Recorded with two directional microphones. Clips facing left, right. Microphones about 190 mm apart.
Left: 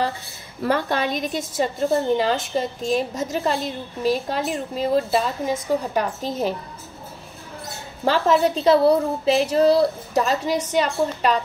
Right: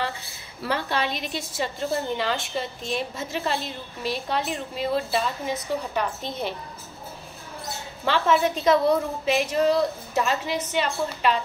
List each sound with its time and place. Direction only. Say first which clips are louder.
0.6 s a woman's voice: left 5 dB; 45° left (ahead or behind)
8.0 s a woman's voice: left 4 dB; 40° left (ahead or behind)